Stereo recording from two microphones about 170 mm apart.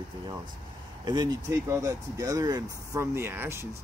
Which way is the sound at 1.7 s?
20° right (ahead or behind).